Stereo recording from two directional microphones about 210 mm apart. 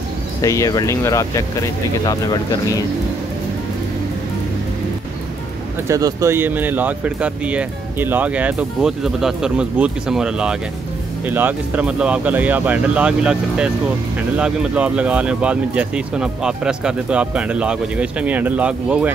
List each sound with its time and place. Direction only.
0.4 s speech: 15° left (ahead or behind)
5.9 s speech: 15° right (ahead or behind)